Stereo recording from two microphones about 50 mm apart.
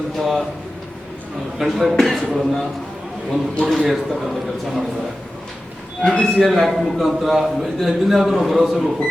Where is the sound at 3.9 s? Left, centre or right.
Centre.